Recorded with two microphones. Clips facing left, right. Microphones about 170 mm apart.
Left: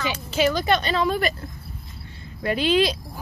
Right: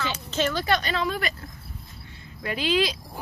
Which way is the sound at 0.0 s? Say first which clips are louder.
Left 4 dB; 10° left (ahead or behind).